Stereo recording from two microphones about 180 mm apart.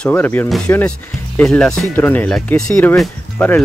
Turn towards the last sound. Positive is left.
turn(degrees=10)  # may be behind; listen again after turning